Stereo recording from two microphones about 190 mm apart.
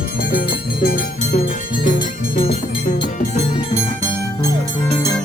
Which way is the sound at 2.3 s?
30° left (ahead or behind).